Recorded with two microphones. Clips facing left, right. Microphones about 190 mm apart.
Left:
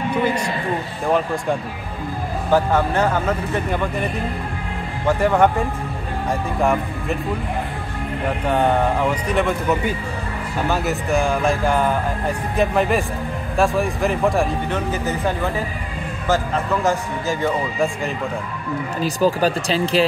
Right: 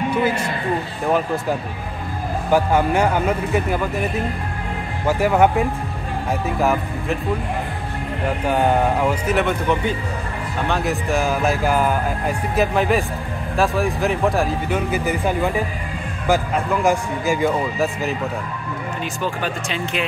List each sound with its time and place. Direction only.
1.0 s speech: 5° right (ahead or behind)
9.3 s speech: centre (ahead or behind)
19.0 s speech: 35° left (ahead or behind)